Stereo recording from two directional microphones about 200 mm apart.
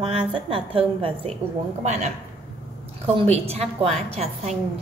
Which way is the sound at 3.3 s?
30° right (ahead or behind).